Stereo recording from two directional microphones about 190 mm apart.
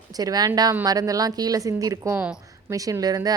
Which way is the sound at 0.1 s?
20° right (ahead or behind).